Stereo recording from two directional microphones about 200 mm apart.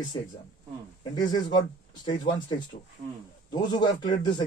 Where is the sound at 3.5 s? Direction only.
20° left (ahead or behind).